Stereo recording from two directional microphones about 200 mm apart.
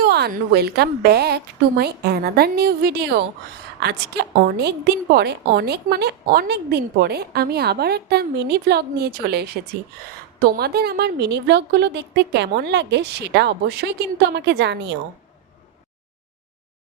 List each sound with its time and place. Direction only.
0.0 s a woman's voice: 55° right (ahead or behind)